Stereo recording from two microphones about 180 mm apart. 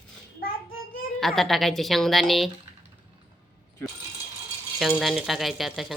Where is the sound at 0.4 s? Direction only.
55° left (ahead or behind).